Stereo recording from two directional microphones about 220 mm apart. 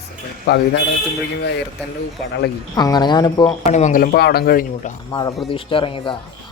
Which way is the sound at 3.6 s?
35° left (ahead or behind).